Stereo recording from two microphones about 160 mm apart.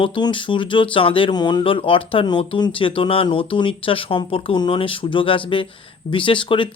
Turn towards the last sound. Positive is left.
turn(degrees=30)  # may be behind; listen again after turning